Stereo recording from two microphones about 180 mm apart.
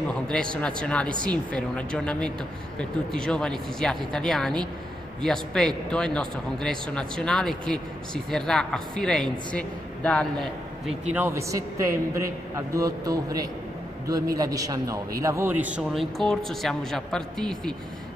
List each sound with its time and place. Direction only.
0.3 s a man's voice: 5° left (ahead or behind)